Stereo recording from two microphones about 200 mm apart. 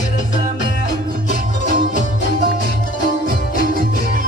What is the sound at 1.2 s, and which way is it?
Music, 45° right (ahead or behind).